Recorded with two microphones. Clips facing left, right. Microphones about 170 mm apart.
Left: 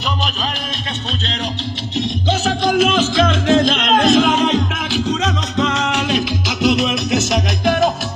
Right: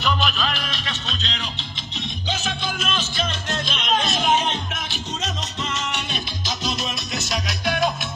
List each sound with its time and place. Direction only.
2.0 s music: 85° left
7.3 s music: 45° left (ahead or behind)